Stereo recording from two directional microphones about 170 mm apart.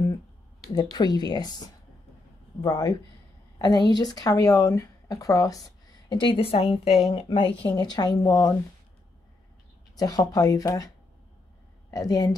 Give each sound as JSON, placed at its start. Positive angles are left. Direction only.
{"t": 0.9, "sound": "speech", "side_deg": 25}
{"t": 9.9, "sound": "speech", "side_deg": 20}
{"t": 11.9, "sound": "speech", "side_deg": 20}